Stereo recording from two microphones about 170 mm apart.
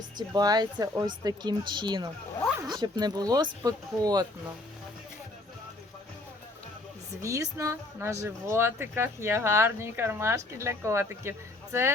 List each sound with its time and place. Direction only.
0.2 s speech: 25° right (ahead or behind)
7.2 s speech: 20° right (ahead or behind)